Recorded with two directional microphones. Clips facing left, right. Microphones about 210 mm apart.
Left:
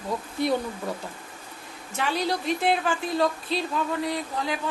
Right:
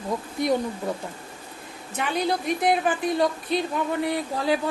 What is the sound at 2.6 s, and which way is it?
Speech, 20° right (ahead or behind).